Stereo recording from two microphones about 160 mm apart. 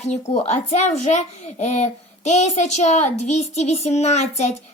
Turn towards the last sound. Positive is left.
turn(degrees=45)  # may be behind; listen again after turning